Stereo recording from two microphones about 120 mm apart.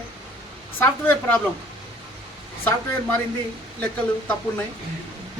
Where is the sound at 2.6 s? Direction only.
15° left (ahead or behind).